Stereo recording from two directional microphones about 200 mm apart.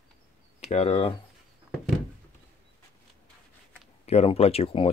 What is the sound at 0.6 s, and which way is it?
Speech, 30° left (ahead or behind).